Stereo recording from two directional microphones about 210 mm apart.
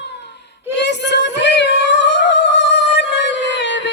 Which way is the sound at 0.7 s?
55° left (ahead or behind).